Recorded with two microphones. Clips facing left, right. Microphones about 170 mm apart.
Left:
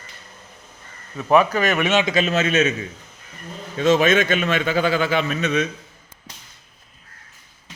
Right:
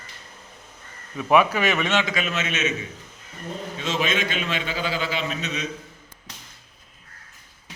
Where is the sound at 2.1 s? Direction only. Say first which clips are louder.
Left 8 dB; 30° left (ahead or behind).